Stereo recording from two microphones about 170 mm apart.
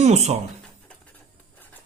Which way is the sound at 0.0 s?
40° right (ahead or behind).